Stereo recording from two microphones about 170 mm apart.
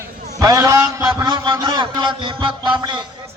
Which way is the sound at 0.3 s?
20° right (ahead or behind).